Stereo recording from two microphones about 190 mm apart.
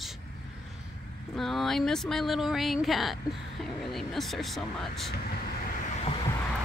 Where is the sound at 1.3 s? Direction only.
Centre (ahead or behind).